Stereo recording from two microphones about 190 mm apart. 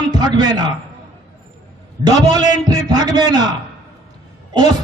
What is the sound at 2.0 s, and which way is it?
A man's voice, 25° right (ahead or behind).